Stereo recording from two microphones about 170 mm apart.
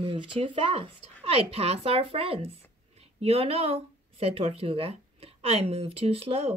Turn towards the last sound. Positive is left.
turn(degrees=-35)  # may be behind; listen again after turning